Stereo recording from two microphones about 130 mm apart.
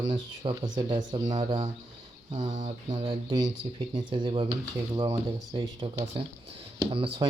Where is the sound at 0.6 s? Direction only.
35° right (ahead or behind).